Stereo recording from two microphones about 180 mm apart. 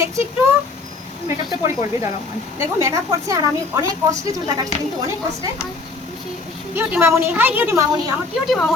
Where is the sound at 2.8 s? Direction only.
15° right (ahead or behind).